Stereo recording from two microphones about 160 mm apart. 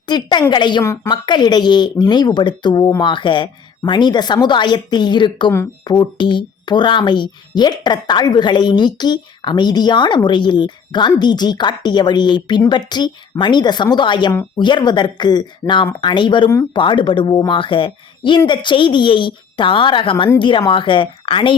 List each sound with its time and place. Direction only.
0.1 s speech: 25° left (ahead or behind)